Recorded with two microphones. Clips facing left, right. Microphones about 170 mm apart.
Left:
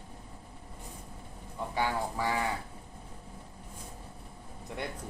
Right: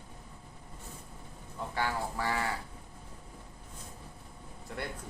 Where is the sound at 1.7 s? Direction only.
15° left (ahead or behind).